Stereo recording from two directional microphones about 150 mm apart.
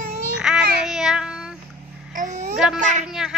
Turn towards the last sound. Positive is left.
turn(degrees=-5)  # may be behind; listen again after turning